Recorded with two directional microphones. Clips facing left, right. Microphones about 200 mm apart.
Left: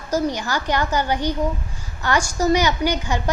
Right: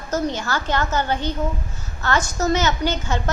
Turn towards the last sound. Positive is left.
turn(degrees=15)  # may be behind; listen again after turning